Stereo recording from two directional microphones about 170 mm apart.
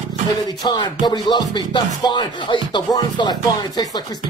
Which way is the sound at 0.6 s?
25° left (ahead or behind).